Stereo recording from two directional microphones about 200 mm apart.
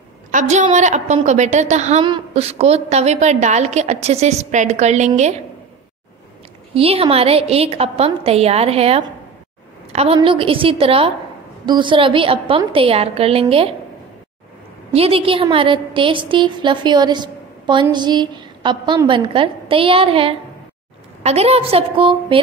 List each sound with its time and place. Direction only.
0.3 s a woman's voice: 35° right (ahead or behind)
6.7 s a woman's voice: 30° right (ahead or behind)
14.9 s a woman's voice: 30° right (ahead or behind)